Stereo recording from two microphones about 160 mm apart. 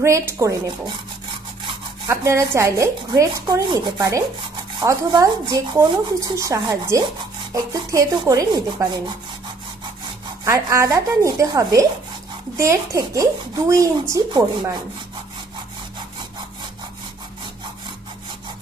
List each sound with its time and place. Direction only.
0.0 s speech: 15° right (ahead or behind)
2.0 s speech: 20° right (ahead or behind)
10.4 s speech: 20° right (ahead or behind)